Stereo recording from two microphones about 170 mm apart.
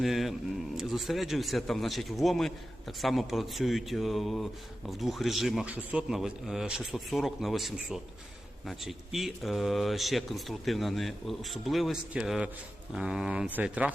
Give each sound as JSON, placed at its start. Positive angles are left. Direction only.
{"t": 0.0, "sound": "speech", "side_deg": 0}